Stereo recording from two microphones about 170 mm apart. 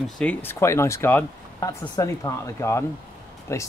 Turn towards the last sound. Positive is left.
turn(degrees=15)  # may be behind; listen again after turning